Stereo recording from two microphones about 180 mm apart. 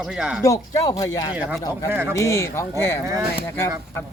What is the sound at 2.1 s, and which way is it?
Speech, 15° left (ahead or behind).